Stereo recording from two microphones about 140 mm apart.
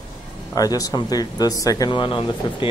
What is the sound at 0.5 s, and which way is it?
Speech, 25° left (ahead or behind).